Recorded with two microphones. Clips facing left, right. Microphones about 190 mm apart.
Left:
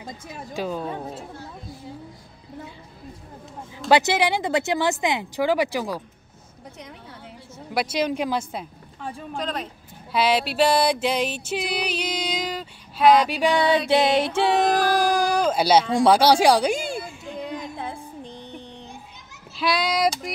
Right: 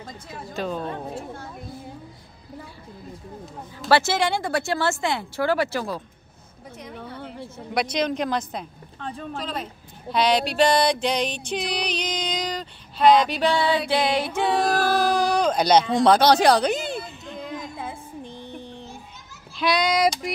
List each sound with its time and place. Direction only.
0.6 s speech: 10° left (ahead or behind)
3.9 s music: 15° left (ahead or behind)
6.8 s a sound: centre (ahead or behind)
7.7 s music: 5° left (ahead or behind)
9.4 s speech: 5° right (ahead or behind)
10.1 s music: 5° left (ahead or behind); by 14.2 s 25° left (ahead or behind)
14.5 s speech: 20° left (ahead or behind)
17.7 s music: 5° right (ahead or behind)
19.5 s speech: centre (ahead or behind)